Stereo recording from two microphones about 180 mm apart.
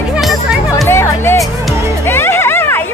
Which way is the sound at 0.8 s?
15° left (ahead or behind).